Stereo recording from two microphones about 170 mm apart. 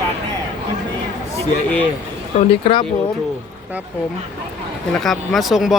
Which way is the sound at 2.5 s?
35° left (ahead or behind).